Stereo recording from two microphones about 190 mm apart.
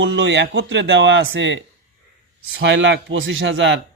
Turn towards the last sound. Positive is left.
turn(degrees=-70)  # may be behind; listen again after turning